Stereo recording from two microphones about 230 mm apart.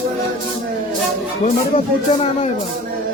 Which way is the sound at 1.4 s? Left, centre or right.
Left.